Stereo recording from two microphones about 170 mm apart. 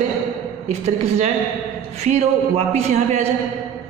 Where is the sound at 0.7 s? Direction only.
40° right (ahead or behind).